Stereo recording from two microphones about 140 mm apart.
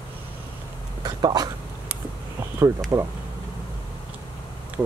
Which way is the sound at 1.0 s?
30° right (ahead or behind).